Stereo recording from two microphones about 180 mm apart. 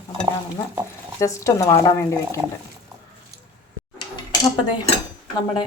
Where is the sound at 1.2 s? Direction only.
15° left (ahead or behind).